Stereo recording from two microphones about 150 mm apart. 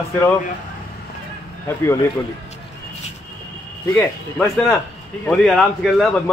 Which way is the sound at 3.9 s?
5° left (ahead or behind).